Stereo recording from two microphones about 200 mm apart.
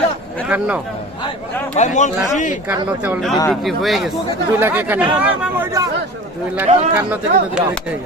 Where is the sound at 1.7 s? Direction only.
35° left (ahead or behind).